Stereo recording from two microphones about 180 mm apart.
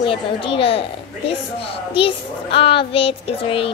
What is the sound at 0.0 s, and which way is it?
A child's voice, 30° left (ahead or behind).